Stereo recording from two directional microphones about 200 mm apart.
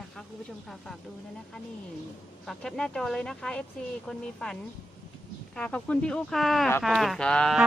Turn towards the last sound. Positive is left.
turn(degrees=5)  # may be behind; listen again after turning